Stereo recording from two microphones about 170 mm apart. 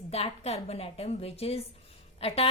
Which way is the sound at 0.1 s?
35° left (ahead or behind).